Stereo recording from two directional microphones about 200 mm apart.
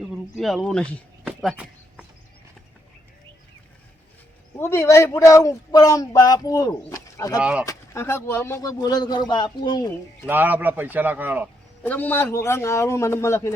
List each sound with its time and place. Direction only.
0.0 s speech: centre (ahead or behind)
1.4 s a sound: centre (ahead or behind)
4.5 s a man's voice: 15° left (ahead or behind)
10.2 s speech: 10° right (ahead or behind)
11.8 s speech: 10° left (ahead or behind)